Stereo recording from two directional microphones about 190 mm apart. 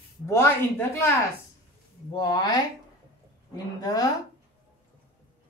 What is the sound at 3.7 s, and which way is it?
Speech, 20° left (ahead or behind).